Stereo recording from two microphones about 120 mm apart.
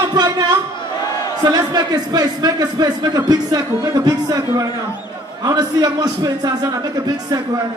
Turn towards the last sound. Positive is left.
turn(degrees=-30)  # may be behind; listen again after turning